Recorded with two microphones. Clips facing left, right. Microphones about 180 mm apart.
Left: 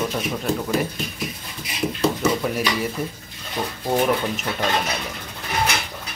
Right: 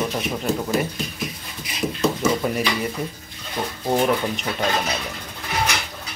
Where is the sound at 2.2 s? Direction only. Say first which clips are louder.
Even; centre (ahead or behind).